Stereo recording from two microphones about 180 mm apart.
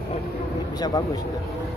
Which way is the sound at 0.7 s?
20° left (ahead or behind).